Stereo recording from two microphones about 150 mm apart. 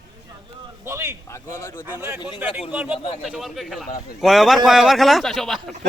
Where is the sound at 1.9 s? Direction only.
10° right (ahead or behind).